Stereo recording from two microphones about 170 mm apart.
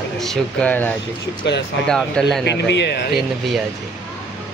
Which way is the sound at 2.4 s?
85° left.